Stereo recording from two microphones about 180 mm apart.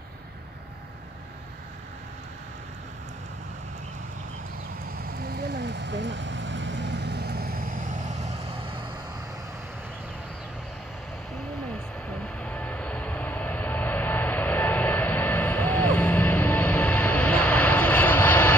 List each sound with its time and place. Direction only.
5.0 s vehicle: 60° right (ahead or behind)
12.4 s vehicle: 5° left (ahead or behind)